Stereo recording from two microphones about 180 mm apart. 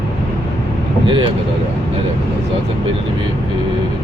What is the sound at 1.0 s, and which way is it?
Speech, 30° right (ahead or behind).